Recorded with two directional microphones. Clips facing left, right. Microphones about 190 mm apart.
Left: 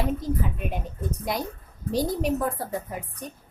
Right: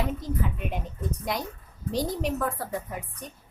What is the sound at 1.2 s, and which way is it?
A woman's voice, 5° left (ahead or behind).